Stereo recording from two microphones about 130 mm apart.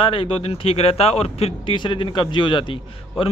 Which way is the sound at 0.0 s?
45° left (ahead or behind).